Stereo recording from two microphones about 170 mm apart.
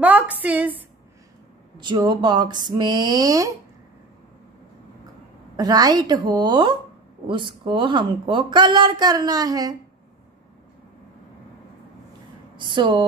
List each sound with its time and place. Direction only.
0.0 s a woman's voice: 10° right (ahead or behind)
1.8 s a woman's voice: 25° right (ahead or behind)
5.6 s a woman's voice: 25° right (ahead or behind)
12.5 s speech: 30° right (ahead or behind)